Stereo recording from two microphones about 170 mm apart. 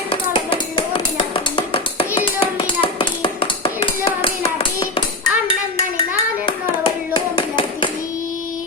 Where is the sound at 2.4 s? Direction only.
30° left (ahead or behind).